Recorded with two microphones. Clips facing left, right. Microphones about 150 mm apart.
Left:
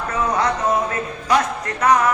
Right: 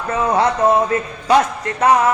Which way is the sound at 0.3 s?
30° right (ahead or behind).